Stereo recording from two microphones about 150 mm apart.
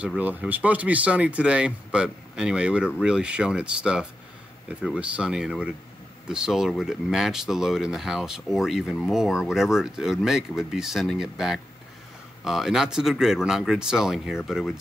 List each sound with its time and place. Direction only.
0.0 s speech: 10° right (ahead or behind)